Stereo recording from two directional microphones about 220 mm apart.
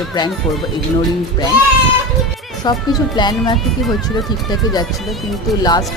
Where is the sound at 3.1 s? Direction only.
20° left (ahead or behind).